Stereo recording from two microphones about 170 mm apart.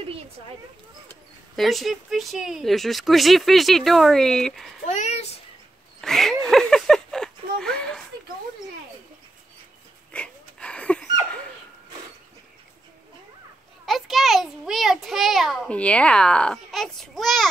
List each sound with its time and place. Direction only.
1.6 s speech: centre (ahead or behind)
4.8 s a child's voice: 45° left (ahead or behind)
5.9 s a sound: centre (ahead or behind)
10.1 s wheeze: 5° left (ahead or behind)
13.8 s a child's voice: centre (ahead or behind)